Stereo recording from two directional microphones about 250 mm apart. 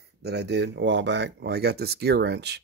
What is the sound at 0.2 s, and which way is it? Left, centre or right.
Speech, right.